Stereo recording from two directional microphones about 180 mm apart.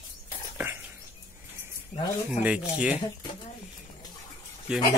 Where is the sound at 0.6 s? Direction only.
10° right (ahead or behind).